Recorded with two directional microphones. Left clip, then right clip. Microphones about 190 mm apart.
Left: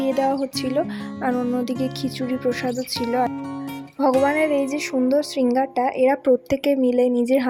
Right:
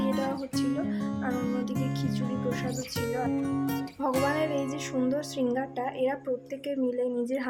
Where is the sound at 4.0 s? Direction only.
30° left (ahead or behind).